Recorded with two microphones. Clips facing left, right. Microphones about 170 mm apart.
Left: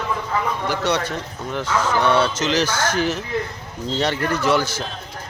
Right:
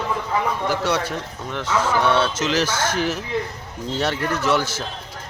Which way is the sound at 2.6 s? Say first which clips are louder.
Left 1 dB; 25° right (ahead or behind).